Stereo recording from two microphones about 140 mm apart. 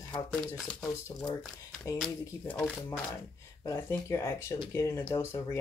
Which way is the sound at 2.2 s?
20° left (ahead or behind).